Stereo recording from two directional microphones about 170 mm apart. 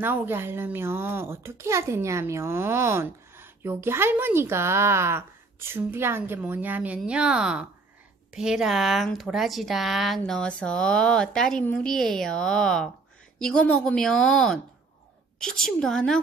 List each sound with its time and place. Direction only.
0.0 s speech: 10° right (ahead or behind)